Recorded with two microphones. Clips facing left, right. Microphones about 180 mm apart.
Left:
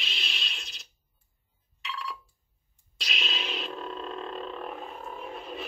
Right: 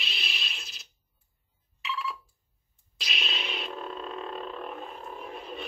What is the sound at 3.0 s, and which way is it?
Music, centre (ahead or behind).